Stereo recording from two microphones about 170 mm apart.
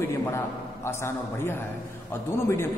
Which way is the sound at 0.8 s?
15° left (ahead or behind).